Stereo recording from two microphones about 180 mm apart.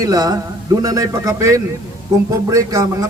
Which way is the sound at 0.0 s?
20° right (ahead or behind).